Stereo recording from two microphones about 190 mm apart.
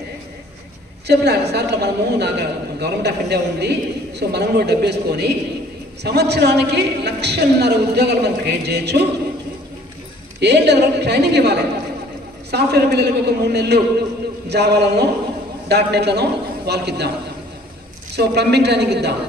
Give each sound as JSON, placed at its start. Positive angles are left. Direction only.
{"t": 1.0, "sound": "a woman's voice", "side_deg": -60}
{"t": 10.4, "sound": "a woman's voice", "side_deg": -60}
{"t": 18.1, "sound": "a woman's voice", "side_deg": -60}